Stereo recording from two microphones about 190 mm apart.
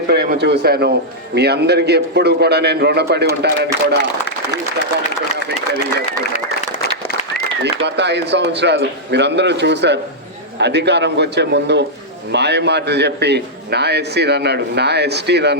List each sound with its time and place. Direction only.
0.1 s a man's voice: 55° right (ahead or behind)
7.6 s a man's voice: 65° right (ahead or behind)